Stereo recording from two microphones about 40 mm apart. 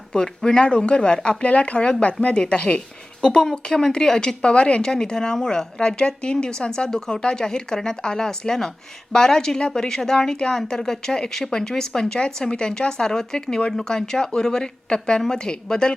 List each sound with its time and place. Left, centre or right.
0.1 s speech: centre
3.4 s speech: centre